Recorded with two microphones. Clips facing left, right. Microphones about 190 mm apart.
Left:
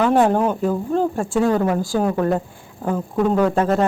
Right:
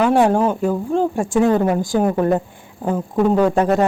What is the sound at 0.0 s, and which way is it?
A woman's voice, 10° right (ahead or behind).